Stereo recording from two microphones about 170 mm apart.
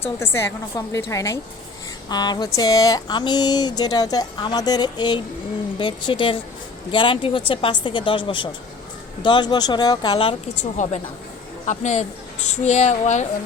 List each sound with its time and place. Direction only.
0.2 s a woman's voice: 15° left (ahead or behind)
10.6 s a woman's voice: 45° left (ahead or behind)